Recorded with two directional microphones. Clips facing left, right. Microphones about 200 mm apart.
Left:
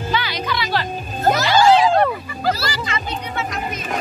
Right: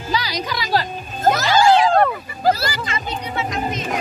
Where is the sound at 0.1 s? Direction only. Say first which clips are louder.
Right 1 dB; 40° right (ahead or behind).